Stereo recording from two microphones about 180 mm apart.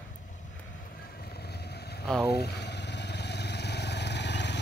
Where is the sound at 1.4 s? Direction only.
65° left (ahead or behind).